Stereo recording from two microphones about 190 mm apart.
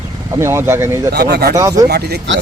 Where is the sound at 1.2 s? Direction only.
55° right (ahead or behind).